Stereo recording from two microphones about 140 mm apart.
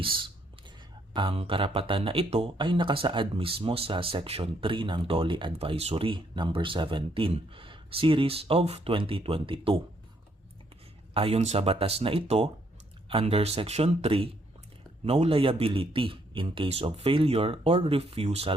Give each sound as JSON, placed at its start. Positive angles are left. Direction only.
{"t": 0.0, "sound": "speech", "side_deg": -35}
{"t": 11.1, "sound": "a man's voice", "side_deg": -40}